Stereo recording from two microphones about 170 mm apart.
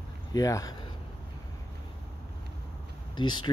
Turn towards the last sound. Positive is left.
turn(degrees=25)  # may be behind; listen again after turning